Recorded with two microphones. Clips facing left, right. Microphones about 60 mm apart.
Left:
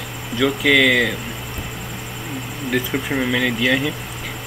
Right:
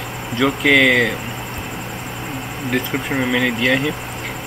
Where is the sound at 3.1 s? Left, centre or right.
Centre.